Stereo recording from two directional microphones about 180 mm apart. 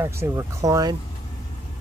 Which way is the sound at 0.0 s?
15° right (ahead or behind).